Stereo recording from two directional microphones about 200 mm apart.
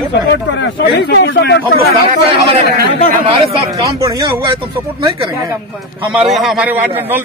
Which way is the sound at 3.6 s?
15° right (ahead or behind).